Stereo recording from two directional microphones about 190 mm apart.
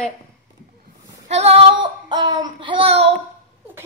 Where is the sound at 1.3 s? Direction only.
30° right (ahead or behind).